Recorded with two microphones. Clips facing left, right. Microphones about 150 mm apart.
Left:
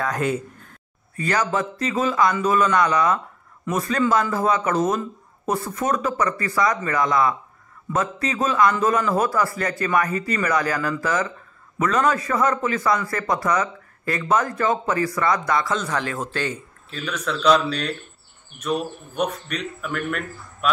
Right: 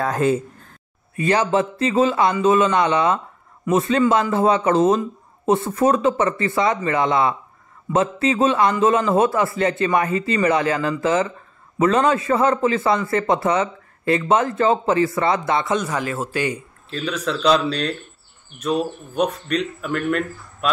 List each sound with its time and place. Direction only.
0.0 s a man's voice: 30° right (ahead or behind)
15.8 s a man's voice: 10° right (ahead or behind)
16.9 s speech: 30° right (ahead or behind)